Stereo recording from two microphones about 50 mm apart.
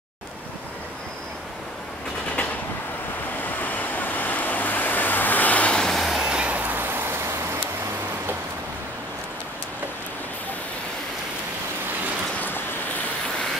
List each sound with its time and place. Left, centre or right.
3.4 s vehicle: left
5.9 s train: centre
6.2 s vehicle: centre
6.5 s vehicle: right
12.4 s waves: left